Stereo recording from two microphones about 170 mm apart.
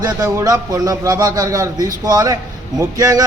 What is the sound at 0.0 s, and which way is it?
Speech, 20° right (ahead or behind).